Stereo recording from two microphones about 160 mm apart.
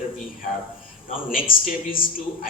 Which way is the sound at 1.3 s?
60° left (ahead or behind).